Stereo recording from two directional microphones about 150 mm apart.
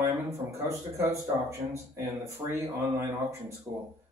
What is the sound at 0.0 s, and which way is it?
A man's voice, 20° right (ahead or behind).